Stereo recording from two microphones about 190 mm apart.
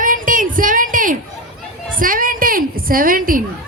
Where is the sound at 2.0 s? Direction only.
45° right (ahead or behind).